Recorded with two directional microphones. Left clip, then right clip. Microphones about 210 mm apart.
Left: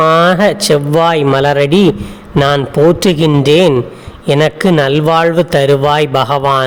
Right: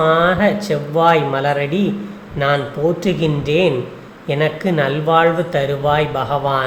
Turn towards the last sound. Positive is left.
turn(degrees=55)  # may be behind; listen again after turning